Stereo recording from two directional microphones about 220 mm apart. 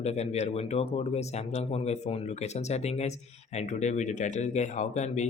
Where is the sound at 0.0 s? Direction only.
30° left (ahead or behind).